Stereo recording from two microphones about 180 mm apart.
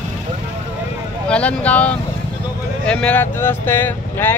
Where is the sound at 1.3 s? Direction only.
5° left (ahead or behind).